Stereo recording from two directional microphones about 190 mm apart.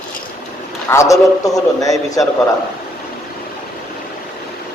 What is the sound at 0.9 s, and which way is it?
A man's voice, 15° left (ahead or behind).